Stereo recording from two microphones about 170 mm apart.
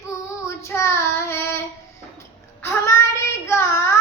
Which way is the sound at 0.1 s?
15° left (ahead or behind).